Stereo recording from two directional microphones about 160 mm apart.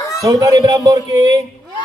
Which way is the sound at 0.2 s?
20° right (ahead or behind).